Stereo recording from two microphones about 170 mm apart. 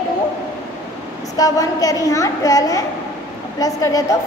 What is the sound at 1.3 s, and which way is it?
A woman's voice, 20° left (ahead or behind).